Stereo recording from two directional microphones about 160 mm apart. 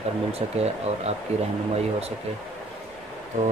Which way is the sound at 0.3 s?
40° right (ahead or behind).